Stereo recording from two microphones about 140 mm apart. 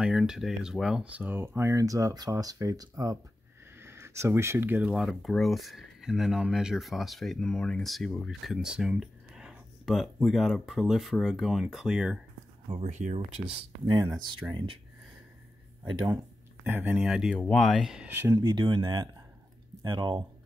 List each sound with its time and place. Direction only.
0.0 s speech: 5° right (ahead or behind)
12.6 s speech: 50° right (ahead or behind)
13.5 s speech: 40° right (ahead or behind)
13.9 s speech: 25° right (ahead or behind)
16.6 s speech: 10° right (ahead or behind)
17.3 s speech: 5° left (ahead or behind)
18.1 s speech: 15° right (ahead or behind)
18.4 s speech: 30° right (ahead or behind)